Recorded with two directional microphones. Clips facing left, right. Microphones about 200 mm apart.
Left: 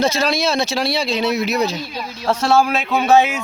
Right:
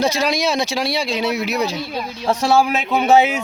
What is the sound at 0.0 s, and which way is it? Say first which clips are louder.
Speech: left 1 dB; 15° right (ahead or behind).